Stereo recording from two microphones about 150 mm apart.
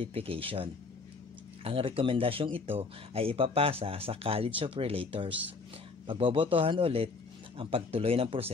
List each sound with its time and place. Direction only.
0.0 s speech: 40° right (ahead or behind)